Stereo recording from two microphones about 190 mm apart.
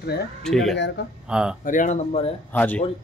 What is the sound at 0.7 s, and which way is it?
Speech, 65° left (ahead or behind).